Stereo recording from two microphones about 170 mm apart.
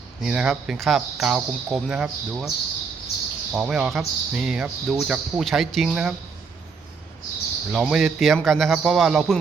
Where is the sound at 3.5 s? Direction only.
5° right (ahead or behind).